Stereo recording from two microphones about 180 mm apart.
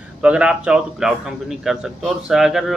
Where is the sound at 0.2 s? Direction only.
5° right (ahead or behind).